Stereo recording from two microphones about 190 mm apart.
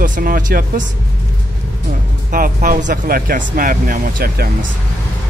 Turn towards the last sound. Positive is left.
turn(degrees=-50)  # may be behind; listen again after turning